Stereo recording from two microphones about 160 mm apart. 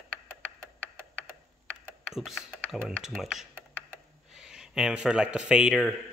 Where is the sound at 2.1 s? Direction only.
Centre (ahead or behind).